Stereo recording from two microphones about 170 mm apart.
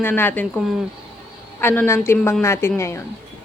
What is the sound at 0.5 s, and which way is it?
Speech, centre (ahead or behind).